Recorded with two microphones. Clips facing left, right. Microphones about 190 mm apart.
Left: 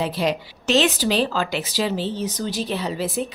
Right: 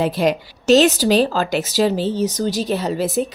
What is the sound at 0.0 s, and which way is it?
A woman's voice, 50° right (ahead or behind).